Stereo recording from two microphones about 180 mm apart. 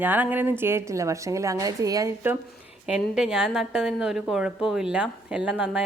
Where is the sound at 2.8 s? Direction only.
5° right (ahead or behind).